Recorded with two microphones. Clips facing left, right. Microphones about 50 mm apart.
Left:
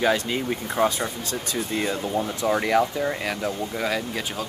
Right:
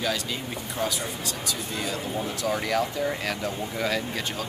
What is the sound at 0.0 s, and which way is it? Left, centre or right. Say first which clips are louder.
Speech: left 7 dB; left.